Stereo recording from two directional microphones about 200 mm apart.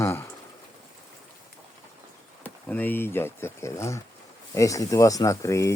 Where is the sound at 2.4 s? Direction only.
10° left (ahead or behind).